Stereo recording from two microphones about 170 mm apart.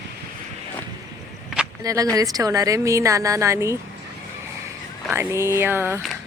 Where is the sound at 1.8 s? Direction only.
20° right (ahead or behind).